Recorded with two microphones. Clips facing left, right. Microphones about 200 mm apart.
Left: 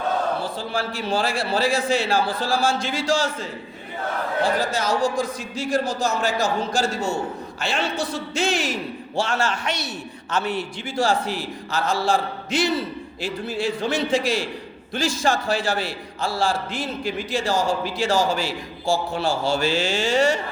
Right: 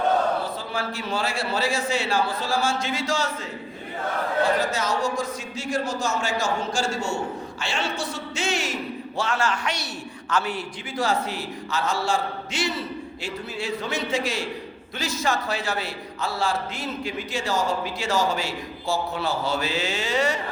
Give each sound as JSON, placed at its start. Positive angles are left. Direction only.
{"t": 0.4, "sound": "a man's voice", "side_deg": 30}
{"t": 4.6, "sound": "a man's voice", "side_deg": 30}